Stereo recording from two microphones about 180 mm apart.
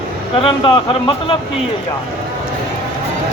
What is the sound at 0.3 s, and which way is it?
Speech, 30° left (ahead or behind).